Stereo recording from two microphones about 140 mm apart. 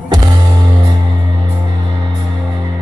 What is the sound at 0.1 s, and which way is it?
Music, 30° right (ahead or behind).